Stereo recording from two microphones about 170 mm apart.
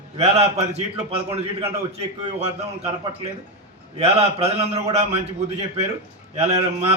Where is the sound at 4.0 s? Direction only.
35° right (ahead or behind).